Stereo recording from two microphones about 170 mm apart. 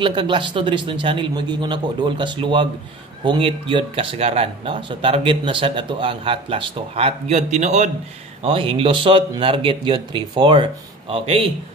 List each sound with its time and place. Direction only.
0.0 s a man's voice: 30° right (ahead or behind)
8.5 s speech: 35° right (ahead or behind)